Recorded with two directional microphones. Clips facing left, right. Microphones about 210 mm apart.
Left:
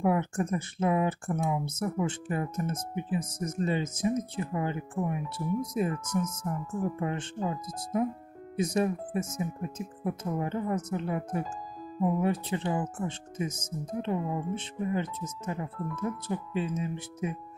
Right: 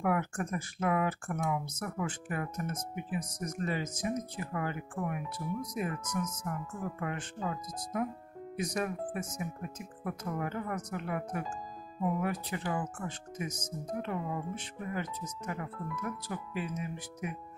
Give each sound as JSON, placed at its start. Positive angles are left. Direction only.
{"t": 0.0, "sound": "speech", "side_deg": 25}